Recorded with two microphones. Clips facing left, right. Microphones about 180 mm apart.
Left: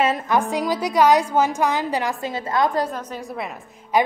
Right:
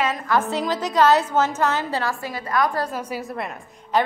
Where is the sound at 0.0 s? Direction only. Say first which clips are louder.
Left 2 dB; 25° left (ahead or behind).